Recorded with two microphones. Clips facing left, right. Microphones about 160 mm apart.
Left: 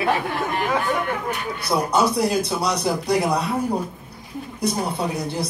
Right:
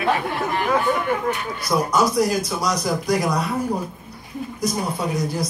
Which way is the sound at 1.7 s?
30° left (ahead or behind).